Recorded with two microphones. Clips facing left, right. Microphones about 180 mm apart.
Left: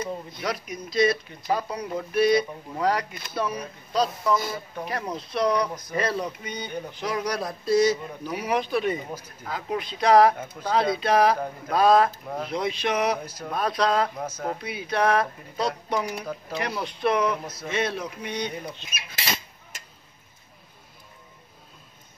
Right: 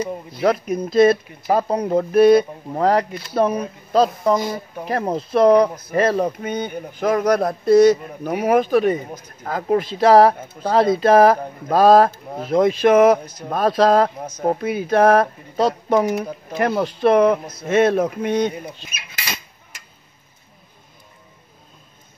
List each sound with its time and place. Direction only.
0.4 s speech: 50° right (ahead or behind)
4.4 s speech: 20° right (ahead or behind)
4.8 s speech: 45° right (ahead or behind)
9.9 s speech: 35° right (ahead or behind)
16.5 s speech: 55° right (ahead or behind)
16.8 s speech: 40° right (ahead or behind)